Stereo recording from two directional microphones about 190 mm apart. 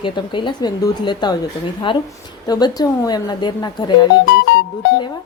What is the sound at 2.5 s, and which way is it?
A woman's voice, 20° left (ahead or behind).